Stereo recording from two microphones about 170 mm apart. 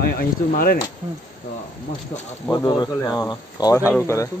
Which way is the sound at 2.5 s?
25° left (ahead or behind).